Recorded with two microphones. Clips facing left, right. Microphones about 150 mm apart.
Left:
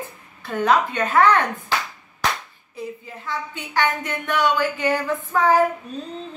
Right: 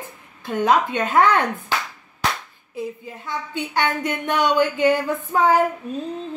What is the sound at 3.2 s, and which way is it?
A woman's voice, 20° right (ahead or behind).